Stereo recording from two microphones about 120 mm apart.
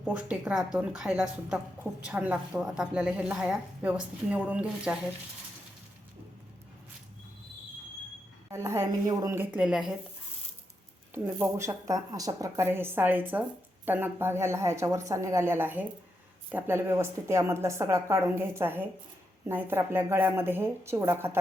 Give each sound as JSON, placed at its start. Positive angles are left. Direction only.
{"t": 0.1, "sound": "a woman's voice", "side_deg": -10}
{"t": 8.4, "sound": "a woman's voice", "side_deg": -25}
{"t": 11.1, "sound": "a woman's voice", "side_deg": -20}